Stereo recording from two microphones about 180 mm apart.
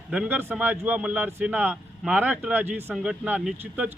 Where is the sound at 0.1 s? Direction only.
10° right (ahead or behind).